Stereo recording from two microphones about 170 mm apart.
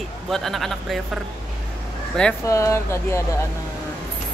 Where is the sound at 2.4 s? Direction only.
15° left (ahead or behind).